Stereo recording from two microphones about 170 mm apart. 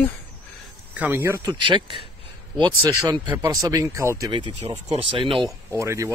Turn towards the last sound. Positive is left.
turn(degrees=-15)  # may be behind; listen again after turning